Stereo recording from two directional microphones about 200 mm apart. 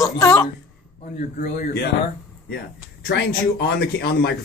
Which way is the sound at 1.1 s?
45° left (ahead or behind).